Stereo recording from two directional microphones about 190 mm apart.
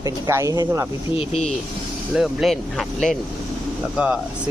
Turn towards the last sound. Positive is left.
turn(degrees=-5)  # may be behind; listen again after turning